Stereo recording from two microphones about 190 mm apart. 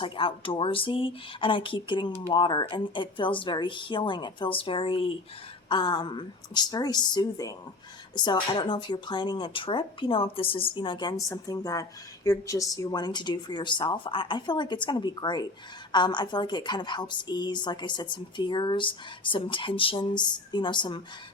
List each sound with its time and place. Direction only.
0.0 s speech: 25° left (ahead or behind)